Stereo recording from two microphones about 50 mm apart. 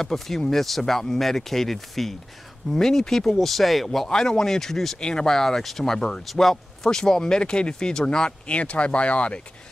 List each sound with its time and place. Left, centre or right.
0.0 s speech: centre; by 9.4 s left